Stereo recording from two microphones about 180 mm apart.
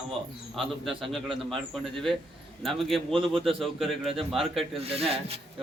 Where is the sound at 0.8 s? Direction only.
Centre (ahead or behind).